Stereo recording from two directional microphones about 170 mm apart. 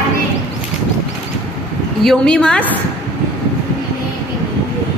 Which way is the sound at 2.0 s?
5° left (ahead or behind).